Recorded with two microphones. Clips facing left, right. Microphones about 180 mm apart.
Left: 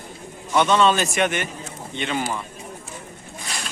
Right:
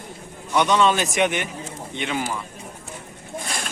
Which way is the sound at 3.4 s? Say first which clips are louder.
Right 2 dB; 50° right (ahead or behind).